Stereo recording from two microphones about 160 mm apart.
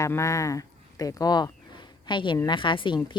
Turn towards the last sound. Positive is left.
turn(degrees=30)  # may be behind; listen again after turning